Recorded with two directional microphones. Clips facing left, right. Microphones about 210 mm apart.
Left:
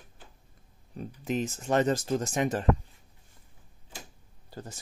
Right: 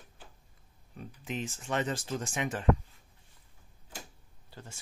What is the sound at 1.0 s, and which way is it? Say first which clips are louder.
Speech: left 7 dB; 40° left (ahead or behind).